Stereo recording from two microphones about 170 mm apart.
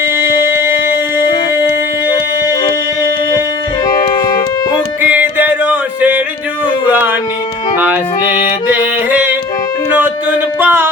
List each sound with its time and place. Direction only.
0.3 s music: 15° right (ahead or behind)
3.8 s music: 25° left (ahead or behind)
5.0 s music: 10° right (ahead or behind)
8.7 s yodeling: 10° right (ahead or behind)
10.6 s music: 10° right (ahead or behind)